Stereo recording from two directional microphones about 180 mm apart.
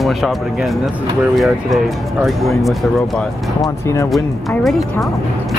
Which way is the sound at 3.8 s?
15° left (ahead or behind).